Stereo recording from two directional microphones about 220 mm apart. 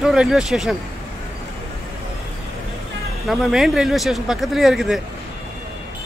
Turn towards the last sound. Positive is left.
turn(degrees=0)  # may be behind; listen again after turning